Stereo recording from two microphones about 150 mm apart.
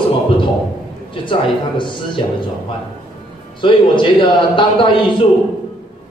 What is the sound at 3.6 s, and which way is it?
A man's voice, 30° left (ahead or behind).